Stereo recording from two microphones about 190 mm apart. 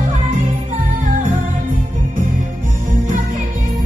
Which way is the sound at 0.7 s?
40° right (ahead or behind).